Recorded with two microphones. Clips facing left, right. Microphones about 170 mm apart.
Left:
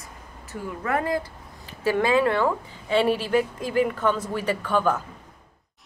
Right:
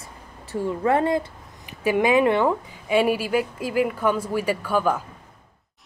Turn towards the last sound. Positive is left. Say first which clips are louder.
# right 1 dB
turn(degrees=-10)  # may be behind; listen again after turning